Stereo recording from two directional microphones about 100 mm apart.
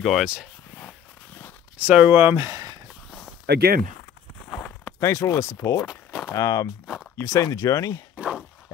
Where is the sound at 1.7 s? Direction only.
15° right (ahead or behind); by 2.8 s 35° right (ahead or behind).